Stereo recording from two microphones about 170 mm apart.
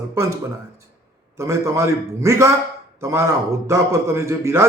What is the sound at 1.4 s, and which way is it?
A man's voice, 15° right (ahead or behind).